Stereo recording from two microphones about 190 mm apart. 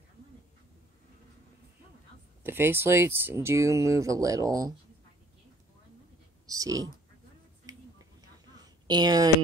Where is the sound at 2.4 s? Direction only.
10° right (ahead or behind).